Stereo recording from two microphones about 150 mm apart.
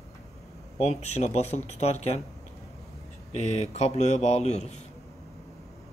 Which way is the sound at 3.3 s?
45° left (ahead or behind).